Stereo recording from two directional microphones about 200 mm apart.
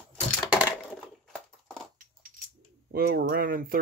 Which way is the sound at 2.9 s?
50° right (ahead or behind).